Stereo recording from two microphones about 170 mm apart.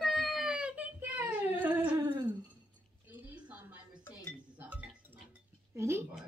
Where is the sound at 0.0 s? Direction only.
Centre (ahead or behind).